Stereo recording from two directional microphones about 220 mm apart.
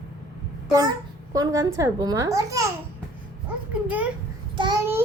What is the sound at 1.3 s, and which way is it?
A woman's voice, 15° right (ahead or behind).